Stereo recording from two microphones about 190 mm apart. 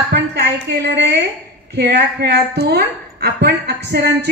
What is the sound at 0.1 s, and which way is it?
A woman's voice, 60° right (ahead or behind).